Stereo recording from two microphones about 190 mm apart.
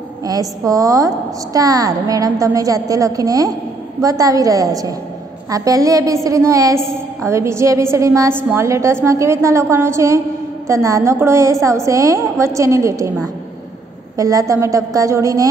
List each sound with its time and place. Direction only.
0.2 s a woman's voice: 20° right (ahead or behind)